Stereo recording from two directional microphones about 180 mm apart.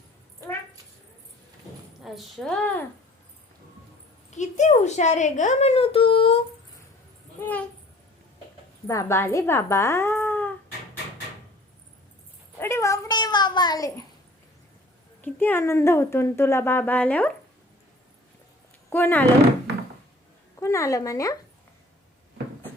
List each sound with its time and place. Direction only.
2.0 s a woman's voice: centre (ahead or behind)
4.3 s a woman's voice: 40° left (ahead or behind)
8.9 s speech: 15° left (ahead or behind)
12.5 s a sound: 15° left (ahead or behind)
15.2 s speech: 10° left (ahead or behind)
18.9 s speech: 10° left (ahead or behind)
20.6 s speech: 15° left (ahead or behind)